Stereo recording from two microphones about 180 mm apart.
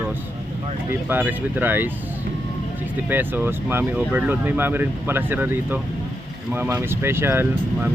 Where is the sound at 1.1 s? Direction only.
10° right (ahead or behind).